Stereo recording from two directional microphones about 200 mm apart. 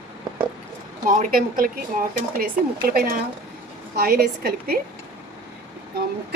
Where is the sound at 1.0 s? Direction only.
45° right (ahead or behind).